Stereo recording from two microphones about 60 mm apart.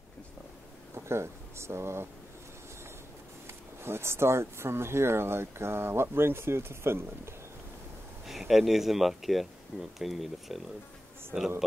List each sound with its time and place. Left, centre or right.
0.9 s speech: right
3.4 s speech: right
8.3 s speech: centre
11.3 s a man's voice: centre